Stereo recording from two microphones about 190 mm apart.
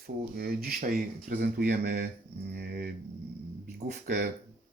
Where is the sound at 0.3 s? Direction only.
55° right (ahead or behind).